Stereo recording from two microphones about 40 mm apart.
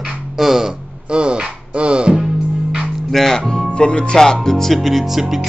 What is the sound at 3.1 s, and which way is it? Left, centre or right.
Speech, centre.